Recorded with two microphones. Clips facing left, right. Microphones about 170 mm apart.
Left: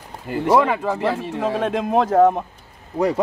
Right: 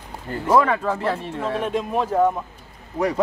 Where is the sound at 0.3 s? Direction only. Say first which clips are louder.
Left 1 dB; 10° left (ahead or behind).